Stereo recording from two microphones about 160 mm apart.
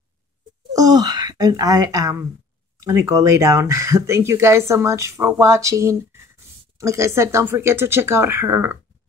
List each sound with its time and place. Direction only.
0.7 s speech: 25° right (ahead or behind)